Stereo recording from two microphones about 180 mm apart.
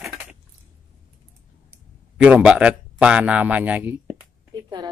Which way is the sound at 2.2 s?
5° right (ahead or behind).